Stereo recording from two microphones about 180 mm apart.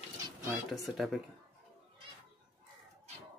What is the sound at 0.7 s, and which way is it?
Speech, centre (ahead or behind).